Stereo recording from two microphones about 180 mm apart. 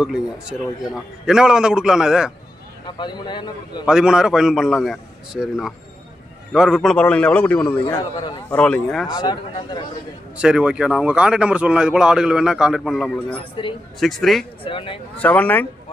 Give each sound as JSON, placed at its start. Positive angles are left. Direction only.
{"t": 0.0, "sound": "speech", "side_deg": -5}
{"t": 3.0, "sound": "a man's voice", "side_deg": 25}
{"t": 3.8, "sound": "a man's voice", "side_deg": -5}
{"t": 7.9, "sound": "a man's voice", "side_deg": 25}
{"t": 8.5, "sound": "a man's voice", "side_deg": 10}
{"t": 9.1, "sound": "a man's voice", "side_deg": 20}
{"t": 10.3, "sound": "speech", "side_deg": -5}
{"t": 13.4, "sound": "a man's voice", "side_deg": 30}
{"t": 13.9, "sound": "speech", "side_deg": 0}
{"t": 14.6, "sound": "a man's voice", "side_deg": 30}
{"t": 15.1, "sound": "a man's voice", "side_deg": 10}